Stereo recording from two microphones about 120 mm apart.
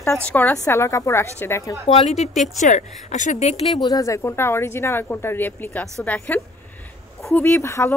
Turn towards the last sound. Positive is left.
turn(degrees=20)  # may be behind; listen again after turning